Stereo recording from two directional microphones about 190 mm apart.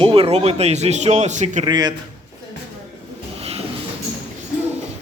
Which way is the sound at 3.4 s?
30° right (ahead or behind).